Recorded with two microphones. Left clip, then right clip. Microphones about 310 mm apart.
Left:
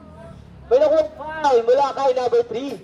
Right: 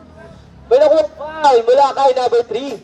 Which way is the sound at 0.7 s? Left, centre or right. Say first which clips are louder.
Right 5 dB; right.